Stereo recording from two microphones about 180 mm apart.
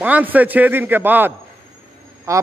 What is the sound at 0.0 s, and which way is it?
A man's voice, 10° right (ahead or behind).